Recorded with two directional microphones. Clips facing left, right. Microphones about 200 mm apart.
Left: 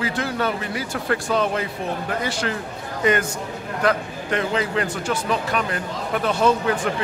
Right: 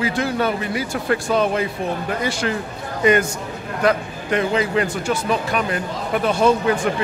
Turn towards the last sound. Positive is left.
turn(degrees=-10)  # may be behind; listen again after turning